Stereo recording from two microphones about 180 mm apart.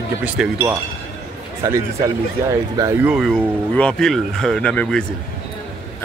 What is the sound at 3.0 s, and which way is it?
Speech, centre (ahead or behind).